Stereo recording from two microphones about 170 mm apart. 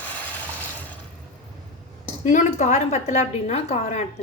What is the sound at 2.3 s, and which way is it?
A woman's voice, 45° left (ahead or behind).